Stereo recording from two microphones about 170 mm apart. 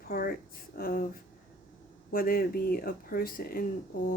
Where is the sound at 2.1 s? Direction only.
60° left (ahead or behind).